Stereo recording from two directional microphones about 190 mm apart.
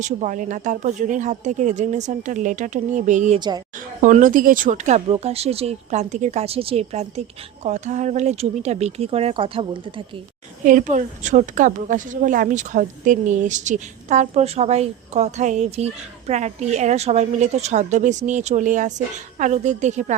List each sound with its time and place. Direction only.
0.0 s a woman's voice: 40° right (ahead or behind)
10.6 s a woman's voice: 45° right (ahead or behind)